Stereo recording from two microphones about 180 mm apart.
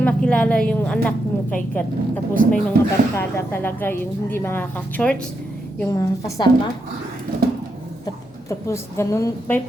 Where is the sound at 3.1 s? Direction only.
15° left (ahead or behind).